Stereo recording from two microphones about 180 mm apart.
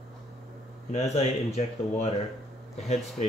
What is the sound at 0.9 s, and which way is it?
Speech, 35° left (ahead or behind).